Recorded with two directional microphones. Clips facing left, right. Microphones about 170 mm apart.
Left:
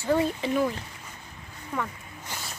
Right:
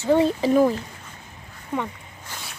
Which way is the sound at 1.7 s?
25° right (ahead or behind).